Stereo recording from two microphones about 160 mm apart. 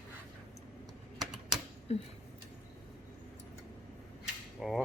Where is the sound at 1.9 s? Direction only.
40° left (ahead or behind).